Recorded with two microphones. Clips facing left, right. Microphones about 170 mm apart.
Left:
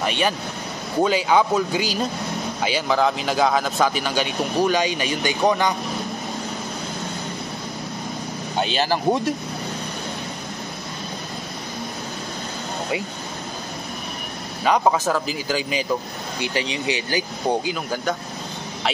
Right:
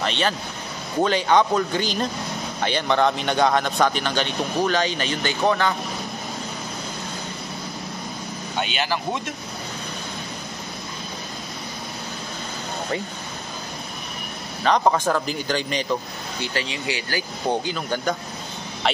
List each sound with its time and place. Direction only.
0.0 s speech: 10° left (ahead or behind)
8.5 s speech: 35° left (ahead or behind)
14.6 s a man's voice: 5° left (ahead or behind)
16.5 s speech: 20° left (ahead or behind); by 18.1 s centre (ahead or behind)